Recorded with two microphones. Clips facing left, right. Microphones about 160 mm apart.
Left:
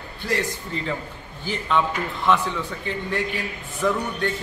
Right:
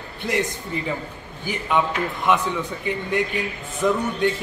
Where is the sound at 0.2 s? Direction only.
20° right (ahead or behind).